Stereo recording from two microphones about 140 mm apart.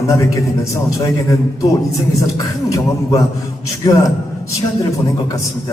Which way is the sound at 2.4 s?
25° left (ahead or behind).